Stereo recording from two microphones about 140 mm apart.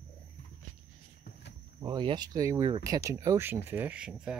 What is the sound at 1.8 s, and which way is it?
Speech, 35° right (ahead or behind).